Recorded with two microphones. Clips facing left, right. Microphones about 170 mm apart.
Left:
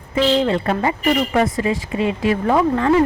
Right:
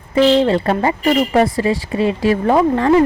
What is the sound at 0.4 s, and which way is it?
Speech, 35° right (ahead or behind).